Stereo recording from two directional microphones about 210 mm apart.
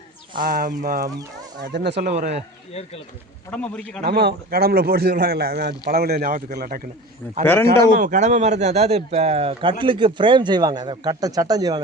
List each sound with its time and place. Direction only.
0.3 s speech: 40° right (ahead or behind)
1.6 s speech: 55° right (ahead or behind)
2.0 s speech: 35° right (ahead or behind)
3.5 s a man's voice: 5° left (ahead or behind)
4.0 s speech: 50° right (ahead or behind)
7.9 s speech: 40° right (ahead or behind); by 11.8 s 20° right (ahead or behind)